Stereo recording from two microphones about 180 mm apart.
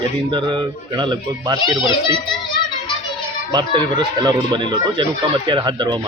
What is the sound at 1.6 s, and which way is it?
Speech, 25° left (ahead or behind).